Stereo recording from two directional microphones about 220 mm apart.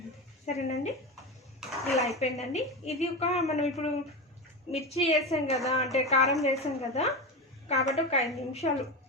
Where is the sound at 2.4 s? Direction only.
30° left (ahead or behind).